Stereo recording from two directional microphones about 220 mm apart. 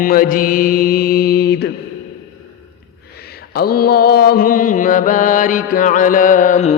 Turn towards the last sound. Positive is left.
turn(degrees=35)  # may be behind; listen again after turning